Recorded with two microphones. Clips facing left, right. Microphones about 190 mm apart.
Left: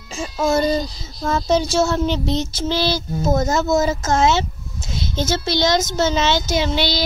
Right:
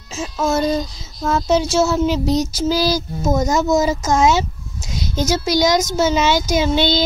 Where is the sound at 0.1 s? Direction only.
5° right (ahead or behind).